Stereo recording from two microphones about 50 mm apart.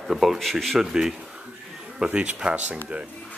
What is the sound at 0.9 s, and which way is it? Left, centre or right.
Speech, centre.